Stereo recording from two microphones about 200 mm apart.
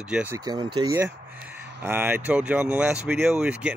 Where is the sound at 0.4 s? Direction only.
20° right (ahead or behind).